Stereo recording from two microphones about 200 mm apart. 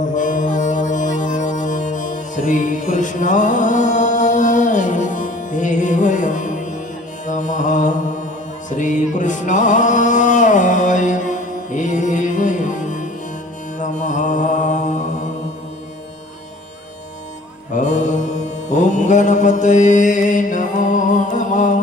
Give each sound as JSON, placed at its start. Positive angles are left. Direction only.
{"t": 0.0, "sound": "music", "side_deg": 40}
{"t": 7.3, "sound": "mantra", "side_deg": 40}
{"t": 8.7, "sound": "music", "side_deg": 40}
{"t": 13.7, "sound": "mantra", "side_deg": 40}
{"t": 17.7, "sound": "mantra", "side_deg": 35}